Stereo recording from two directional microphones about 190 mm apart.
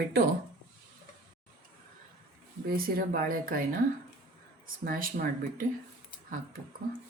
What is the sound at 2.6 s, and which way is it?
Speech, 50° right (ahead or behind).